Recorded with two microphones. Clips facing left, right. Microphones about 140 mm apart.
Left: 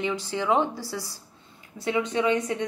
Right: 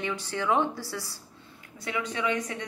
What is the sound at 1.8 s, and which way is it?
Speech, 30° left (ahead or behind).